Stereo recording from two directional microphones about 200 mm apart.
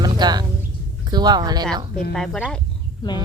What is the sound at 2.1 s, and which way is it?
Speech, centre (ahead or behind).